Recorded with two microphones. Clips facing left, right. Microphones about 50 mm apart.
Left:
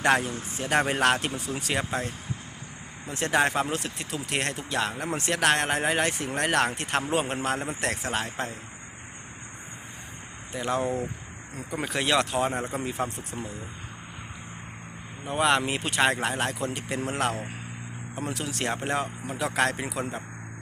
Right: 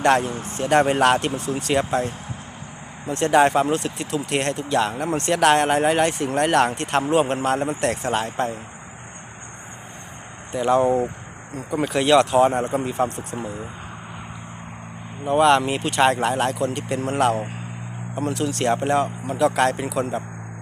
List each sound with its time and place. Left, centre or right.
0.0 s speech: centre
10.6 s speech: centre
10.8 s speech: right
11.7 s speech: centre
15.3 s speech: centre